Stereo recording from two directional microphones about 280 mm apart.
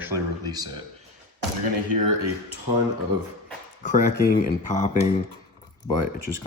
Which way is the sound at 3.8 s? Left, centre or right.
Left.